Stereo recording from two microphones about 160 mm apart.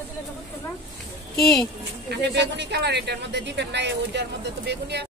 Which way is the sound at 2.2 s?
90° right.